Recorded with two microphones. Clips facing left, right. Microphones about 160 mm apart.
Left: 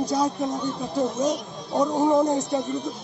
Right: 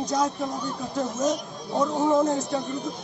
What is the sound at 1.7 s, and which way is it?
Speech, 15° left (ahead or behind).